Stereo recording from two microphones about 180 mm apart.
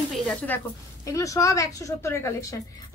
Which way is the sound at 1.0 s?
15° left (ahead or behind).